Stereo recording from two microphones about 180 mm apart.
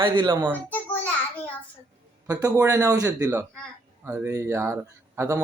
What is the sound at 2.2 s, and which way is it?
Speech, 20° right (ahead or behind).